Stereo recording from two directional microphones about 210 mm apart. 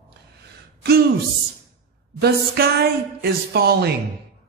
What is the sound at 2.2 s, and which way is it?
Speech, 50° right (ahead or behind).